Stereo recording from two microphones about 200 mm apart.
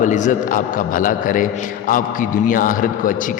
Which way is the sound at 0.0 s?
40° left (ahead or behind).